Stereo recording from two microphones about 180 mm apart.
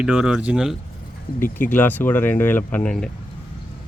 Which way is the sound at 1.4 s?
45° left (ahead or behind).